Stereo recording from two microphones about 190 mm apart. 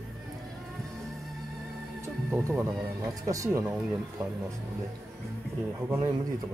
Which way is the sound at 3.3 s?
15° right (ahead or behind).